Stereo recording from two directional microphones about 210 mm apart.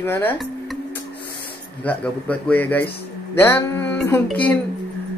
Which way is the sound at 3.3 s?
10° left (ahead or behind).